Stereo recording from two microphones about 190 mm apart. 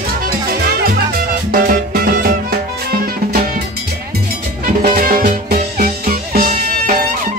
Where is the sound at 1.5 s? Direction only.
50° right (ahead or behind).